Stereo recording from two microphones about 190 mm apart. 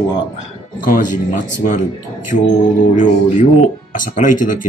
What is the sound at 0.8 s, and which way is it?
Speech, 45° left (ahead or behind).